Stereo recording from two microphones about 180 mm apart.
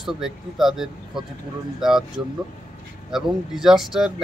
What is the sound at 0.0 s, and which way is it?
Speech, centre (ahead or behind).